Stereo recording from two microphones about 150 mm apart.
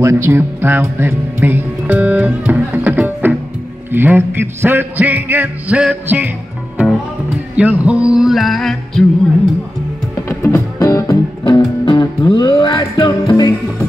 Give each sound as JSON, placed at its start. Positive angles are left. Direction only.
{"t": 0.0, "sound": "speech", "side_deg": -20}
{"t": 3.9, "sound": "music", "side_deg": -15}
{"t": 7.5, "sound": "music", "side_deg": -10}
{"t": 10.2, "sound": "music", "side_deg": 15}
{"t": 11.4, "sound": "music", "side_deg": 35}